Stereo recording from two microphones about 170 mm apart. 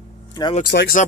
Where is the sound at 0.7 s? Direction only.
70° left (ahead or behind).